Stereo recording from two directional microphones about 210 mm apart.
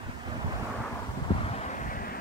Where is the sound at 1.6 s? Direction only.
35° left (ahead or behind).